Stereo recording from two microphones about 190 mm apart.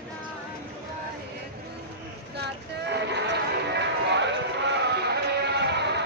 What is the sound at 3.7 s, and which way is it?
Music, 65° right (ahead or behind).